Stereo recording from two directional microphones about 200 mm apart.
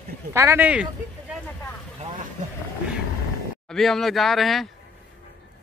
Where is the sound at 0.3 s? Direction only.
15° right (ahead or behind).